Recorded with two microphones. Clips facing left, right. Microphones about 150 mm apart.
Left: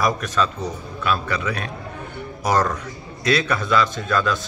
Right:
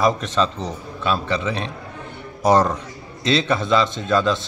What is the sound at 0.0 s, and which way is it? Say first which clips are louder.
A man's voice: right 2 dB; 25° right (ahead or behind).